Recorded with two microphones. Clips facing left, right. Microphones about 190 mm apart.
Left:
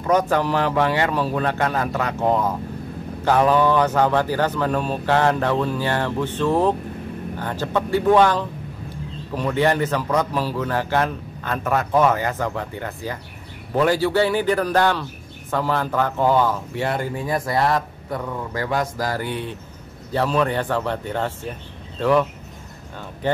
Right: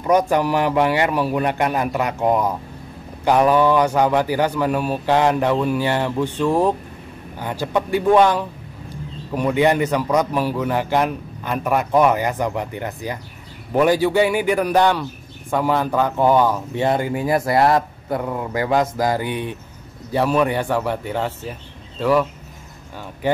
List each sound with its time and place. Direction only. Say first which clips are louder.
0.0 s a man's voice: right 2 dB; 15° right (ahead or behind)
23.2 s speech: right 2 dB; 10° right (ahead or behind)